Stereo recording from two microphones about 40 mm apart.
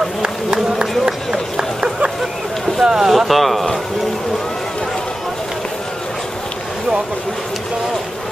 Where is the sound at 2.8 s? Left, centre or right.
Centre.